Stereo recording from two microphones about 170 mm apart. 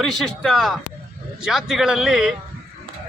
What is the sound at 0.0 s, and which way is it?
A man's voice, centre (ahead or behind).